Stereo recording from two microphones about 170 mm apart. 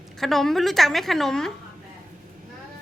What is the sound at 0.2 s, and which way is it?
A woman's voice, centre (ahead or behind).